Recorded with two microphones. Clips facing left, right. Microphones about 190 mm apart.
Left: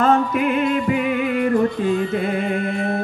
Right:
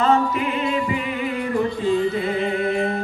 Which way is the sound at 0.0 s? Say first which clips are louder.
Left 2 dB; 50° left (ahead or behind).